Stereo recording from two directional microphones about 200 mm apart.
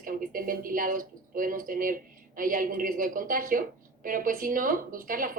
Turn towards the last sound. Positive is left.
turn(degrees=-45)  # may be behind; listen again after turning